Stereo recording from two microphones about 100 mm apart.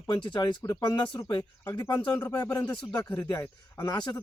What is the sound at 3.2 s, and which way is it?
Speech, 30° left (ahead or behind).